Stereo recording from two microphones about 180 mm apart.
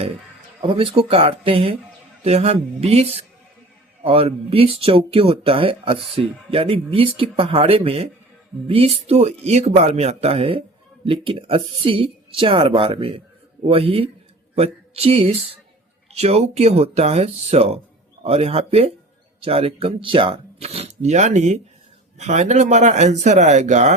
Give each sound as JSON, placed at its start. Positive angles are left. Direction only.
{"t": 0.6, "sound": "speech", "side_deg": -30}